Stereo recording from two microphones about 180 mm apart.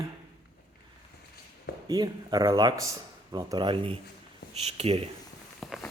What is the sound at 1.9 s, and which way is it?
Speech, 20° right (ahead or behind).